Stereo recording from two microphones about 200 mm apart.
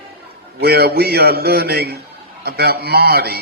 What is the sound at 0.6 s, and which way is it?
Speech, 50° right (ahead or behind).